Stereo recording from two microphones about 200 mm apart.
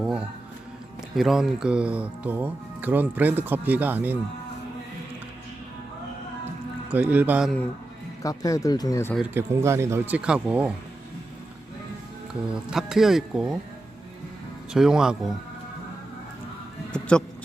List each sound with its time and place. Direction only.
0.0 s music: 5° right (ahead or behind)
1.1 s speech: centre (ahead or behind)
6.9 s speech: 10° right (ahead or behind)
8.2 s speech: 15° left (ahead or behind)
9.3 s speech: 15° right (ahead or behind)
12.7 s speech: centre (ahead or behind)
14.7 s speech: 5° right (ahead or behind)
16.9 s a sound: 5° left (ahead or behind)